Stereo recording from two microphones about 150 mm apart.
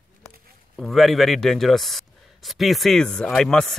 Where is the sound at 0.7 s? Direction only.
Centre (ahead or behind).